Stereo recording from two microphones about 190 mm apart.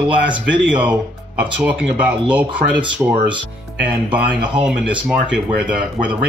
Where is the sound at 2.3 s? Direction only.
5° right (ahead or behind).